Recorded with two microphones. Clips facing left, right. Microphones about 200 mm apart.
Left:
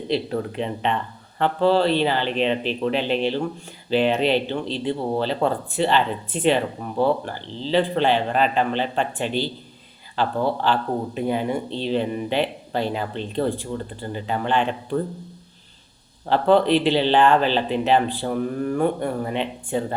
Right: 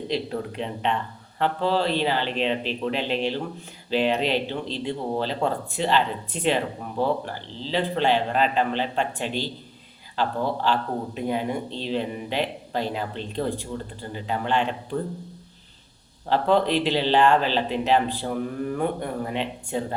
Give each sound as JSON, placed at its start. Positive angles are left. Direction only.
{"t": 0.1, "sound": "speech", "side_deg": 0}
{"t": 16.3, "sound": "speech", "side_deg": 0}